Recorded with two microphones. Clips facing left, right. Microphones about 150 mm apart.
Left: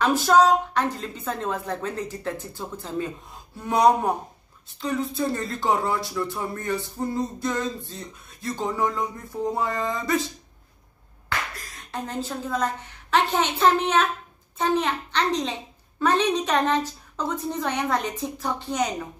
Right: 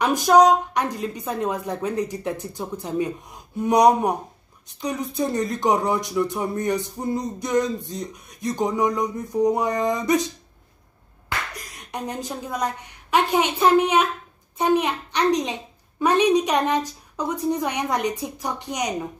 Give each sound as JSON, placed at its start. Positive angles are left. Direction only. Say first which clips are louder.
{"t": 0.0, "sound": "speech", "louder": "right 3 dB", "side_deg": -15}
{"t": 11.2, "sound": "speech", "louder": "even", "side_deg": -15}